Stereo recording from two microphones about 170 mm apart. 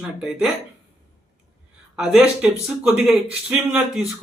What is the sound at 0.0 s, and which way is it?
Speech, 5° right (ahead or behind).